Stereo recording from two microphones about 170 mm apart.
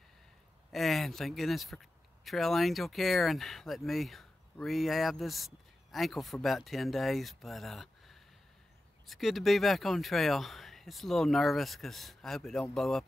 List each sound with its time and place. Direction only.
0.7 s speech: centre (ahead or behind)